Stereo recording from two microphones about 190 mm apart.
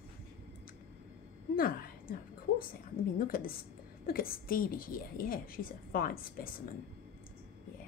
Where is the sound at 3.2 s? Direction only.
50° left (ahead or behind).